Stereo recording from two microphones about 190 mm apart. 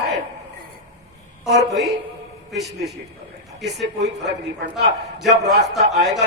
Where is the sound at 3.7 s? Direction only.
65° right (ahead or behind).